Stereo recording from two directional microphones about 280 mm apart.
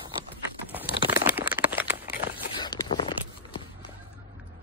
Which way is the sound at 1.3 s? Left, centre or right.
Centre.